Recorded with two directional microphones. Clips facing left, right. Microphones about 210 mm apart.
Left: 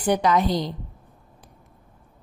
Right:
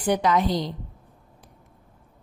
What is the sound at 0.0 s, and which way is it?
Speech, 40° left (ahead or behind).